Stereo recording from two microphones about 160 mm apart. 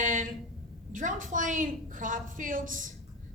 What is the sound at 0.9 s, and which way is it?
A woman's voice, 55° right (ahead or behind).